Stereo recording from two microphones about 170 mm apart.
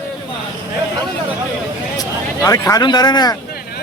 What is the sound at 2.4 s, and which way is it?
Speech, 20° left (ahead or behind).